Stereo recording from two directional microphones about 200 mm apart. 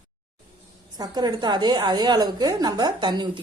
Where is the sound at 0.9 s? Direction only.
20° right (ahead or behind).